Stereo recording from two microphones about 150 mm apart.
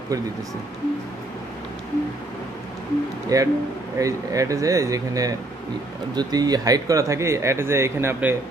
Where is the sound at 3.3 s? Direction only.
20° right (ahead or behind).